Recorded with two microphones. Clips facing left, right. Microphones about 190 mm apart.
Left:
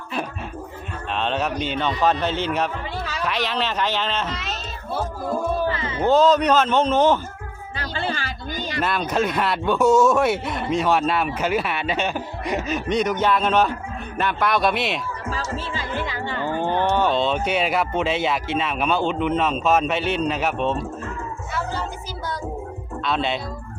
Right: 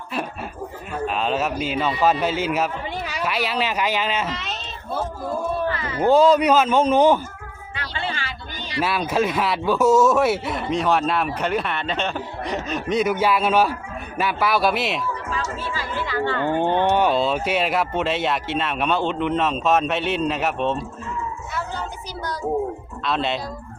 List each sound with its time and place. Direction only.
1.0 s a child's voice: 5° right (ahead or behind)
5.6 s music: 25° left (ahead or behind)
6.0 s a child's voice: 10° right (ahead or behind)
7.8 s music: 40° left (ahead or behind)
8.8 s speech: 5° right (ahead or behind)
15.3 s music: 25° left (ahead or behind)
16.0 s a sound: 15° left (ahead or behind)
16.4 s speech: 20° right (ahead or behind); by 20.7 s centre (ahead or behind)
21.5 s a sound: centre (ahead or behind)
23.0 s speech: centre (ahead or behind)